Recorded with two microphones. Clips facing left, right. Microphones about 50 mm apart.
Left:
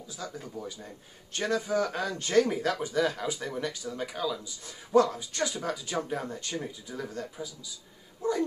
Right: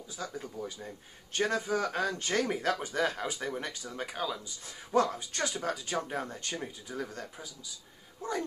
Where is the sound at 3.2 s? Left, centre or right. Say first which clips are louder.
Left 2 dB; right.